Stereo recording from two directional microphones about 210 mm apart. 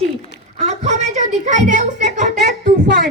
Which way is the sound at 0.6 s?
35° right (ahead or behind).